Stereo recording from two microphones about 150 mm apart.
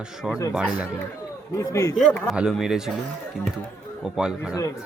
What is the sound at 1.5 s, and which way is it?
Speech, 20° left (ahead or behind).